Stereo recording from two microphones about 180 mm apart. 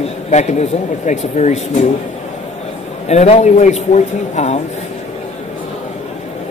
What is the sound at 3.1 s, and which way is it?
Speech, 35° left (ahead or behind).